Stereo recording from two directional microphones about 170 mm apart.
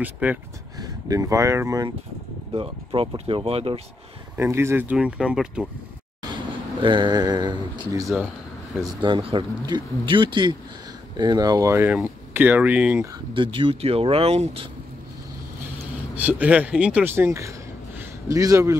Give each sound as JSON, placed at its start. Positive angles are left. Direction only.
{"t": 0.0, "sound": "speech", "side_deg": -10}
{"t": 0.7, "sound": "speech", "side_deg": -20}
{"t": 2.5, "sound": "speech", "side_deg": -30}
{"t": 4.4, "sound": "speech", "side_deg": -15}
{"t": 6.2, "sound": "speech", "side_deg": -25}
{"t": 13.1, "sound": "speech", "side_deg": -30}
{"t": 16.2, "sound": "speech", "side_deg": -10}